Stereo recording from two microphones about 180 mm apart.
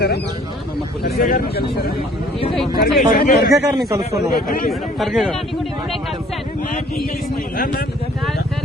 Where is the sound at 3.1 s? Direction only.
55° left (ahead or behind).